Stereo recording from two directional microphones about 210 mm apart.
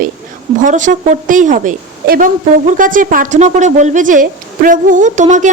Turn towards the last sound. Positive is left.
turn(degrees=-35)  # may be behind; listen again after turning